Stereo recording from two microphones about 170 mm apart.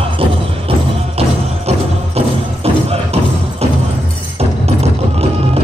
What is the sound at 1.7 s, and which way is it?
Music, 35° right (ahead or behind).